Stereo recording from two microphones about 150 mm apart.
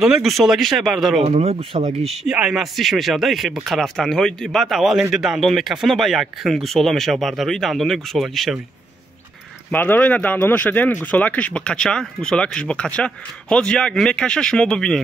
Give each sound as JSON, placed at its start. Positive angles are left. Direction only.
{"t": 0.0, "sound": "speech", "side_deg": 0}
{"t": 1.2, "sound": "speech", "side_deg": -45}
{"t": 2.2, "sound": "speech", "side_deg": -5}
{"t": 9.7, "sound": "speech", "side_deg": 10}